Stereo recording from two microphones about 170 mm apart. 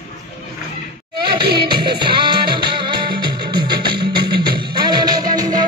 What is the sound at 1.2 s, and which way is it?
Music, 25° right (ahead or behind).